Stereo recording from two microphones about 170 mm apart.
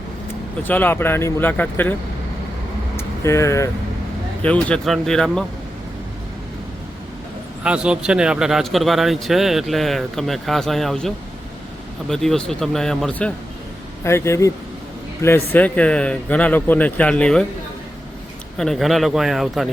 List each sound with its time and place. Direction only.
0.7 s a man's voice: 10° left (ahead or behind)
2.9 s vehicle: 15° left (ahead or behind)
4.4 s speech: 5° left (ahead or behind)
7.6 s a man's voice: 5° right (ahead or behind)
18.5 s speech: centre (ahead or behind)